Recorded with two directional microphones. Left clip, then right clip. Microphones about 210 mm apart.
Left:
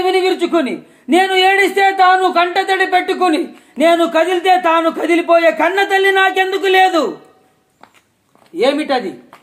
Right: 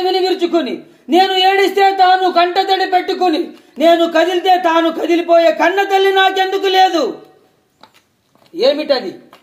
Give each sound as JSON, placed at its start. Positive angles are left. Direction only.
{"t": 0.0, "sound": "speech", "side_deg": 20}
{"t": 8.5, "sound": "speech", "side_deg": 10}